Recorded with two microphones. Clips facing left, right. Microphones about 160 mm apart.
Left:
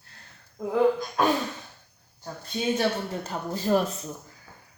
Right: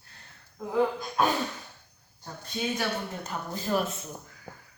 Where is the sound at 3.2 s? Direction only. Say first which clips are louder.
Left 5 dB; 40° left (ahead or behind).